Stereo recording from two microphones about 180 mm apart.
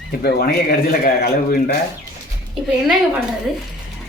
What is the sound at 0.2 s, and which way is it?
A man's voice, 60° left (ahead or behind).